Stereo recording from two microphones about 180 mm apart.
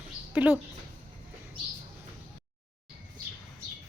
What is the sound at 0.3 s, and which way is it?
Speech, 10° right (ahead or behind).